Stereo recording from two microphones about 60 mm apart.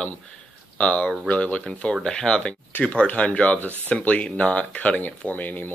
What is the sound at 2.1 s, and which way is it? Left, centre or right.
Speech, centre.